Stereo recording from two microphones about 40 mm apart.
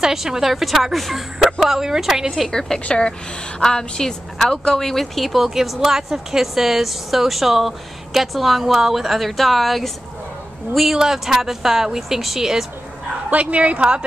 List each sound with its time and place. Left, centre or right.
0.0 s speech: centre
2.8 s a woman's voice: left; by 11.0 s centre
11.0 s speech: centre
13.3 s speech: right